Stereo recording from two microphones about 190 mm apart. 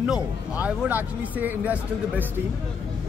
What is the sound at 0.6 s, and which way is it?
Speech, 10° right (ahead or behind).